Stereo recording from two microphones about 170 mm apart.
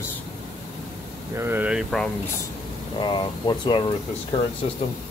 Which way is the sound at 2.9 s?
25° left (ahead or behind).